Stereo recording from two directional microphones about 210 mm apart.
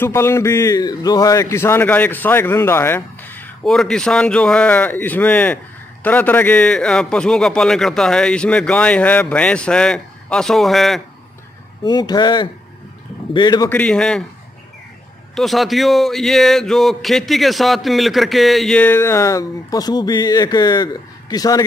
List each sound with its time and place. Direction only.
0.0 s a man's voice: 10° left (ahead or behind)
11.8 s speech: 20° left (ahead or behind)
13.7 s speech: 5° left (ahead or behind)
15.3 s speech: centre (ahead or behind); by 21.6 s 15° left (ahead or behind)